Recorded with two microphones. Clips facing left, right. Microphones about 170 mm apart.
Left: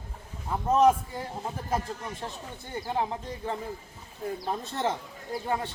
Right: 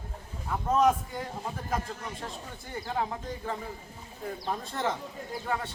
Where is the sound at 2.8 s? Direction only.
20° left (ahead or behind).